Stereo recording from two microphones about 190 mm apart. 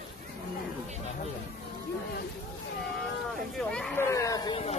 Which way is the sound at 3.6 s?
5° left (ahead or behind).